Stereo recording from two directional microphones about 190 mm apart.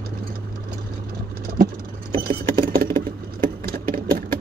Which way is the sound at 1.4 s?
50° right (ahead or behind).